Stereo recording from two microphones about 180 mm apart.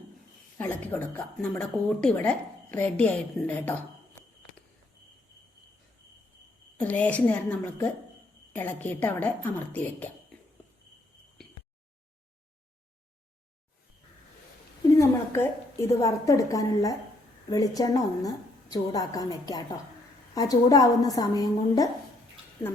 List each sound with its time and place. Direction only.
0.6 s speech: 10° left (ahead or behind)
6.8 s speech: 10° left (ahead or behind)
14.9 s a sound: 15° left (ahead or behind)
15.9 s a woman's voice: 15° left (ahead or behind)